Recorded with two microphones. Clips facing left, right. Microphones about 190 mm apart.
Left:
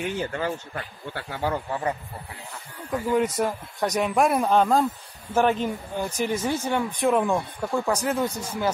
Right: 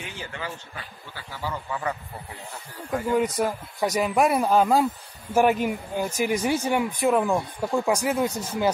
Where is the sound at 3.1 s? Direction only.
Centre (ahead or behind).